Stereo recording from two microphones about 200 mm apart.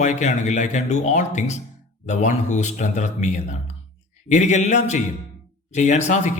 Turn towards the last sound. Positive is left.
turn(degrees=35)  # may be behind; listen again after turning